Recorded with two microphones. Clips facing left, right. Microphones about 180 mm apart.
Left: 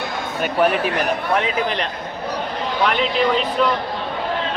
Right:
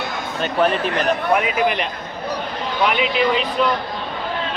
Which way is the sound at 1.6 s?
5° right (ahead or behind).